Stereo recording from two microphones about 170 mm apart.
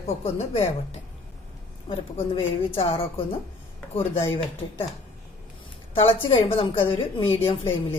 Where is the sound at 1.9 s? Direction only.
30° left (ahead or behind).